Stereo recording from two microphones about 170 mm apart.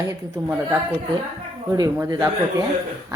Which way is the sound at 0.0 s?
20° right (ahead or behind).